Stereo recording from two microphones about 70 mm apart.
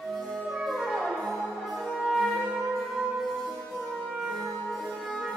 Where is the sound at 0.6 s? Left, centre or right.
Centre.